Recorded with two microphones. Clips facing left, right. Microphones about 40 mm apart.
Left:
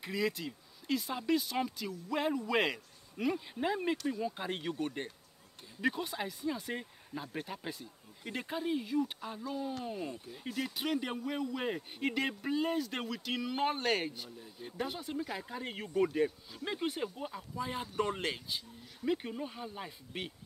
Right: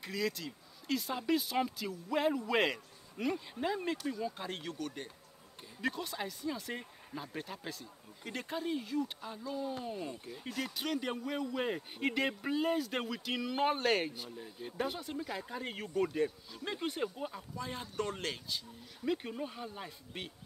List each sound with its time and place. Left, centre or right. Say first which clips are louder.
0.0 s speech: left 2 dB; centre
0.5 s a man's voice: left 1 dB; centre; by 5.1 s left
5.8 s a man's voice: left 3 dB; centre
18.9 s a man's voice: left 1 dB; centre